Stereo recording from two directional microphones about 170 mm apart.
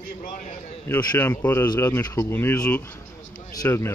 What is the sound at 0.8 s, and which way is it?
Speech, 10° left (ahead or behind).